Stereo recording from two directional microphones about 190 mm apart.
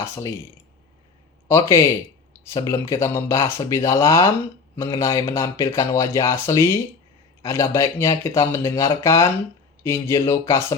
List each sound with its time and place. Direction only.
0.0 s speech: 15° left (ahead or behind)
1.5 s speech: 15° left (ahead or behind)